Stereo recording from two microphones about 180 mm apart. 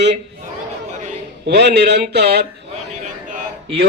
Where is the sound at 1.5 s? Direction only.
65° right (ahead or behind).